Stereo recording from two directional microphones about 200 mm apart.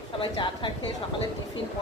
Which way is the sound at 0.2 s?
25° left (ahead or behind).